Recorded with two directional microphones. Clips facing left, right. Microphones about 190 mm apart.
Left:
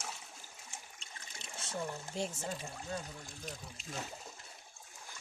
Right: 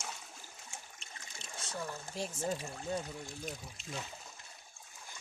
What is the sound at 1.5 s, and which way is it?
Speech, 25° left (ahead or behind).